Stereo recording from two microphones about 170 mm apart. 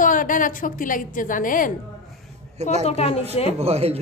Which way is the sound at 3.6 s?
35° right (ahead or behind).